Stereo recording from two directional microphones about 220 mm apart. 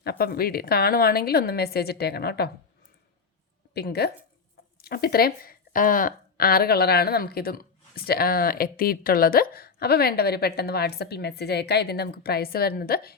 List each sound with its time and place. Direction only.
0.0 s speech: 45° left (ahead or behind)
3.8 s speech: 45° left (ahead or behind)